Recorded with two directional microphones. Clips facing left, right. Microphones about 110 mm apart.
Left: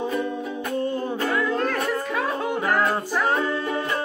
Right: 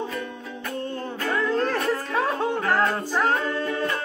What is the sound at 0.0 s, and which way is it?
Music, 15° left (ahead or behind).